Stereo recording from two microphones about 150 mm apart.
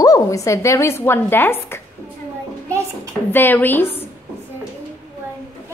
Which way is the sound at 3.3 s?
15° left (ahead or behind).